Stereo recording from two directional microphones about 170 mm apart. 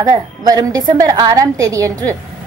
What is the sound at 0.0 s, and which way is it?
A woman's voice, 20° right (ahead or behind).